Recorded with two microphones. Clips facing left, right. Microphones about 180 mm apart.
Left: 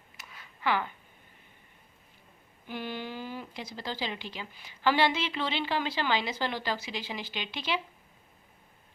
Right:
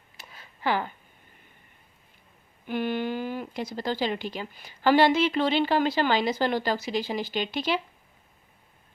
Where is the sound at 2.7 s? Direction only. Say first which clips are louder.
Right 9 dB; 60° right (ahead or behind); by 7.8 s 45° right (ahead or behind).